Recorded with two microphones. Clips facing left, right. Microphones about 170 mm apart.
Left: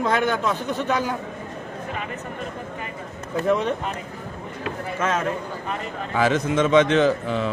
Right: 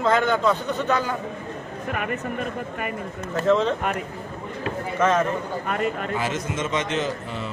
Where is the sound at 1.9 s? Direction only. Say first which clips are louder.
Right 6 dB; 65° right (ahead or behind).